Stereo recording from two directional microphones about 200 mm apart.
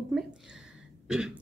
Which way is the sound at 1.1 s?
5° right (ahead or behind).